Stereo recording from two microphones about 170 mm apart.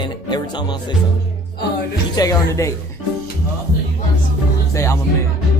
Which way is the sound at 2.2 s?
20° left (ahead or behind).